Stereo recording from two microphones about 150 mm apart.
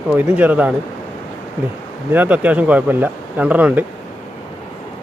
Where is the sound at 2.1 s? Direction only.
10° right (ahead or behind).